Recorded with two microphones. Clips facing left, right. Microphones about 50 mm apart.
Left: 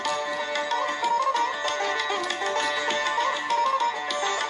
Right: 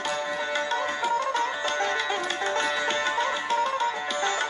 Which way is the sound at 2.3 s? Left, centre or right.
Centre.